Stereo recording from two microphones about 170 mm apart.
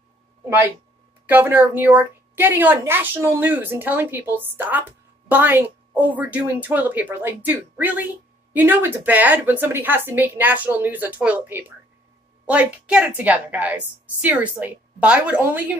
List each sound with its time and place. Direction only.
1.2 s a woman's voice: 10° right (ahead or behind)